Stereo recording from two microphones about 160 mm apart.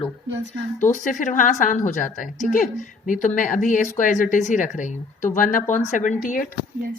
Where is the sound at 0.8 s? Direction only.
55° left (ahead or behind).